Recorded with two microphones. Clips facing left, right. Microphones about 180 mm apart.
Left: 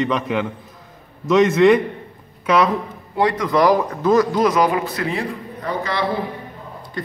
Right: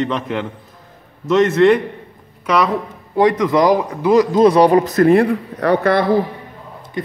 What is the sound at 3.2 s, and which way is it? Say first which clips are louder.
Speech: right 3 dB; 20° right (ahead or behind).